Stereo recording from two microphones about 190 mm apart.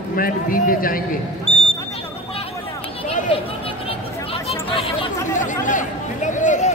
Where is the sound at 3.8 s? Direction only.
30° left (ahead or behind).